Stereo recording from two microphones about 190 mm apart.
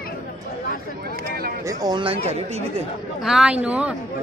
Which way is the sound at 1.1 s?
50° right (ahead or behind).